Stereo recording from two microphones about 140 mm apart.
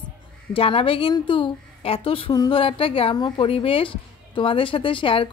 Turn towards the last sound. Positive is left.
turn(degrees=40)  # may be behind; listen again after turning